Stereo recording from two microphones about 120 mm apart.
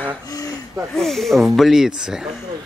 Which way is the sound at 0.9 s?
Centre (ahead or behind).